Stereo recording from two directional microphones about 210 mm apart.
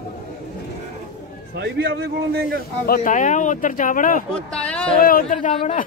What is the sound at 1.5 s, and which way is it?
Speech, 55° right (ahead or behind).